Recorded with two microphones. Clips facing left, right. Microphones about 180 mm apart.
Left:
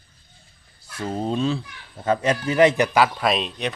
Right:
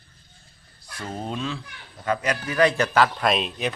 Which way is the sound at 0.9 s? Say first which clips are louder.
Left 6 dB; 30° left (ahead or behind).